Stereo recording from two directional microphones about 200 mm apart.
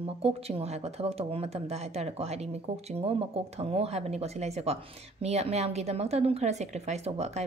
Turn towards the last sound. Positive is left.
turn(degrees=-35)  # may be behind; listen again after turning